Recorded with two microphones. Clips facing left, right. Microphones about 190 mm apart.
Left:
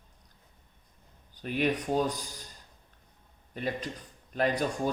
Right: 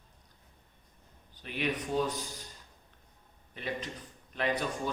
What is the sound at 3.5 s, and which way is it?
Speech, 40° left (ahead or behind).